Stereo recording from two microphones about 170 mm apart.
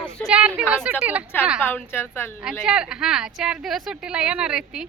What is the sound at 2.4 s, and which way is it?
A woman's voice, 5° right (ahead or behind).